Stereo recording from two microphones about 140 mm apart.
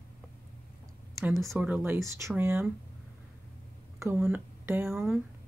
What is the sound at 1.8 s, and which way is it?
Speech, 20° right (ahead or behind).